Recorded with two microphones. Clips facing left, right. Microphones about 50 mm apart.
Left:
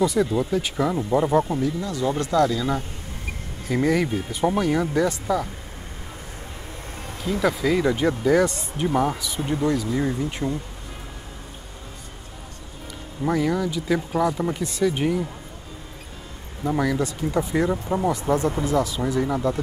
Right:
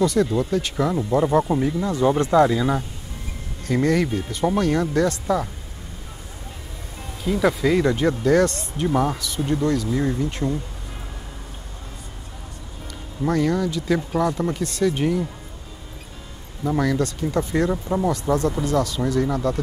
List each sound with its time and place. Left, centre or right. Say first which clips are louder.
0.0 s speech: right 1 dB; centre
1.8 s speech: right 5 dB; right
3.6 s speech: right 1 dB; centre
7.2 s speech: right 2 dB; centre
13.2 s speech: right 1 dB; centre
16.6 s speech: right 1 dB; centre